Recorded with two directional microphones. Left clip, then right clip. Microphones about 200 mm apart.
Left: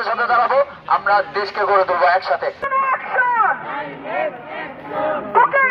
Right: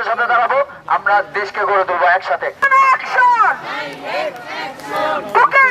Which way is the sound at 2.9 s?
50° right (ahead or behind).